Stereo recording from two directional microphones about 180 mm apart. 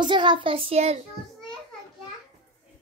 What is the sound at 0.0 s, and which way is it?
A child's voice, 25° right (ahead or behind).